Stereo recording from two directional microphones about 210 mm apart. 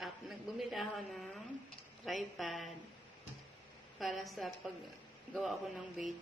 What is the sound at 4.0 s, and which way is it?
A woman's voice, centre (ahead or behind).